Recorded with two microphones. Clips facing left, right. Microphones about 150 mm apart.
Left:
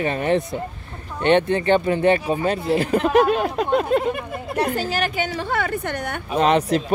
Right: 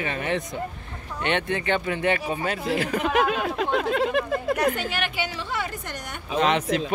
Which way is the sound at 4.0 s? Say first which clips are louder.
Right 1 dB; 90° right.